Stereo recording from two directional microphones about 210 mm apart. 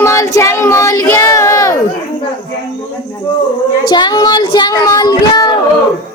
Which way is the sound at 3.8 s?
20° left (ahead or behind).